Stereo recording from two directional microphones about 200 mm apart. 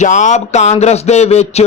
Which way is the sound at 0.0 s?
35° left (ahead or behind).